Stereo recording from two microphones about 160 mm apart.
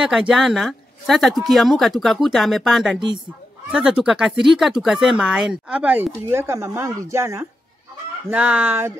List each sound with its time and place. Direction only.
0.0 s speech: 5° right (ahead or behind)